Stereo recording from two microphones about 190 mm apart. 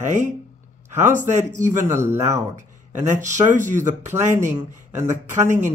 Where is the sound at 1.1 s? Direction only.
40° right (ahead or behind).